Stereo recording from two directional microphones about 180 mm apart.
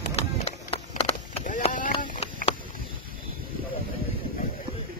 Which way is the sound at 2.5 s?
50° right (ahead or behind).